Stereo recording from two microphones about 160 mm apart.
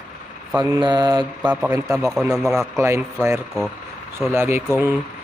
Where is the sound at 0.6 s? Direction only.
30° right (ahead or behind).